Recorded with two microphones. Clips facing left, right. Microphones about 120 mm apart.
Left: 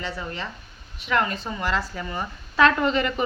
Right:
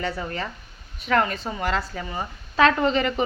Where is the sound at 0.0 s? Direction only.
45° right (ahead or behind).